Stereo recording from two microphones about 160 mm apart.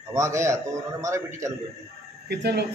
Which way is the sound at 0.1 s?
20° right (ahead or behind).